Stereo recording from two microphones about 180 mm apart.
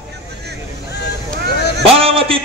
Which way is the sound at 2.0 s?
30° right (ahead or behind).